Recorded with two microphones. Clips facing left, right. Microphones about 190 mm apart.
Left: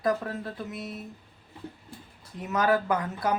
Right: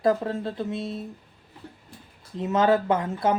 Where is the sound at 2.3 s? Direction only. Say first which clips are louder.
Right 4 dB; 25° right (ahead or behind).